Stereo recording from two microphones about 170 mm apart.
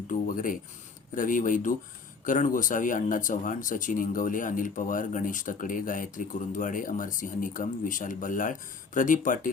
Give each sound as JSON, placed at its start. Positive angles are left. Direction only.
{"t": 0.1, "sound": "speech", "side_deg": 50}